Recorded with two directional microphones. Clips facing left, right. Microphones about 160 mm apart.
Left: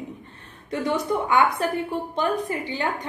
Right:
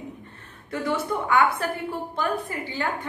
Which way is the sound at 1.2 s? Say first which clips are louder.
Right 1 dB; 20° left (ahead or behind).